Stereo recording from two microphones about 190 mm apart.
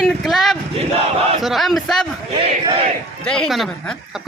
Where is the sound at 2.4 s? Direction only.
30° right (ahead or behind).